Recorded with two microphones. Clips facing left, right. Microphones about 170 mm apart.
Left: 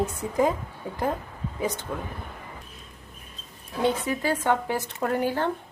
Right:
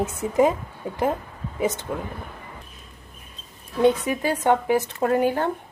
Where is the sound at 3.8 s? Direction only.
15° right (ahead or behind).